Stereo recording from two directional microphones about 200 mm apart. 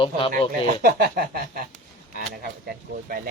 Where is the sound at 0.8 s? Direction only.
50° right (ahead or behind).